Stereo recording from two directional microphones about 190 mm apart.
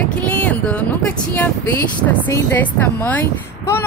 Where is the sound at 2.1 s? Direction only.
10° left (ahead or behind).